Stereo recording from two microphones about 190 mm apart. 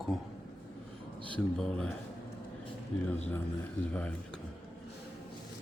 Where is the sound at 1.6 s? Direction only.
5° left (ahead or behind).